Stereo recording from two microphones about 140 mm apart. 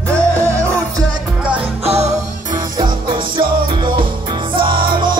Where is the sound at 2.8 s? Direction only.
35° right (ahead or behind).